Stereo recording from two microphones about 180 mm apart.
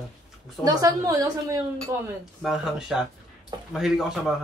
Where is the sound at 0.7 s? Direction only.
20° right (ahead or behind).